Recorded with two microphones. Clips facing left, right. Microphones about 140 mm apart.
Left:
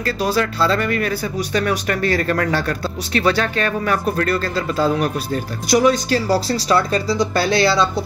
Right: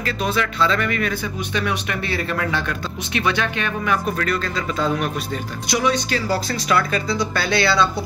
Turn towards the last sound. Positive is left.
turn(degrees=35)  # may be behind; listen again after turning